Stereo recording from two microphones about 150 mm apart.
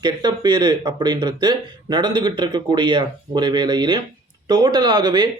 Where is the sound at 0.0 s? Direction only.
30° right (ahead or behind).